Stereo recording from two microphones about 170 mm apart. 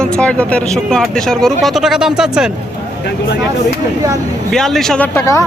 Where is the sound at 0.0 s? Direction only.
5° left (ahead or behind).